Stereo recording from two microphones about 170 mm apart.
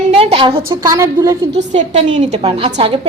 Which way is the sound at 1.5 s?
40° right (ahead or behind).